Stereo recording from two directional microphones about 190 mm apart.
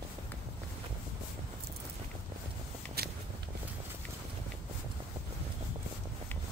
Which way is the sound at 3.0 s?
55° right (ahead or behind).